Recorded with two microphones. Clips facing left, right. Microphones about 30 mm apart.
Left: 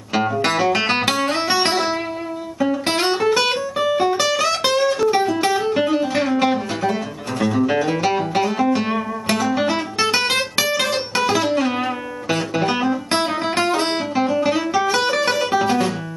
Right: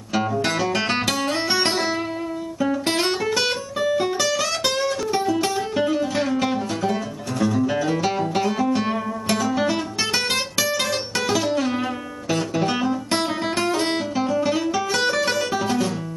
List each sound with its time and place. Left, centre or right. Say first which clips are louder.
0.1 s music: left 3 dB; left
3.0 s music: left 4 dB; left